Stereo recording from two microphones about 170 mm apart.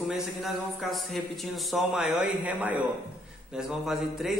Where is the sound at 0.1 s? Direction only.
Centre (ahead or behind).